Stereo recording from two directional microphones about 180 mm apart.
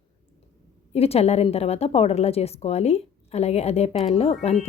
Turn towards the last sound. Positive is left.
turn(degrees=35)  # may be behind; listen again after turning